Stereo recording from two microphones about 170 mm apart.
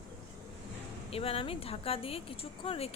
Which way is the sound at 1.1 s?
35° left (ahead or behind).